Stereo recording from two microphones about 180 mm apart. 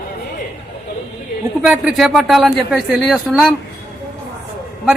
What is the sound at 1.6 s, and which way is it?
Speech, 5° right (ahead or behind).